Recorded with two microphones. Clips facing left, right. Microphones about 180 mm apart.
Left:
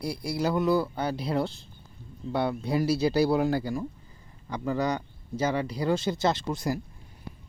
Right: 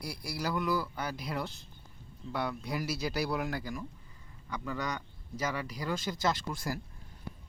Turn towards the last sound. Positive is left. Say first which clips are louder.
# left 6 dB
turn(degrees=20)  # may be behind; listen again after turning